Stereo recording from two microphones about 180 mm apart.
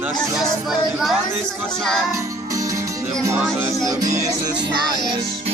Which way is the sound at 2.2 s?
15° right (ahead or behind).